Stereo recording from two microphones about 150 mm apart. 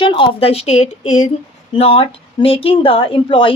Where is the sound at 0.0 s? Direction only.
35° left (ahead or behind); by 1.3 s 55° left (ahead or behind).